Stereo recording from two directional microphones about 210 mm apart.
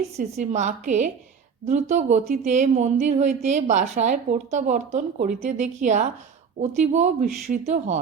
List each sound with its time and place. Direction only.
0.2 s a woman's voice: 35° right (ahead or behind)